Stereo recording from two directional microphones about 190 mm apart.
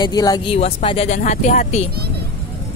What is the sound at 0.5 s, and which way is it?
Speech, 30° left (ahead or behind).